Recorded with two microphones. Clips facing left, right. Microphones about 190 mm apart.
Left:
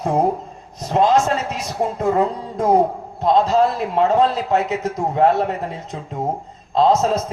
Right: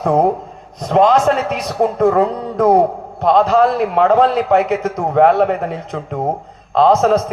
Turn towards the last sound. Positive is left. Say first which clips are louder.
# right 4 dB
turn(degrees=-65)  # may be behind; listen again after turning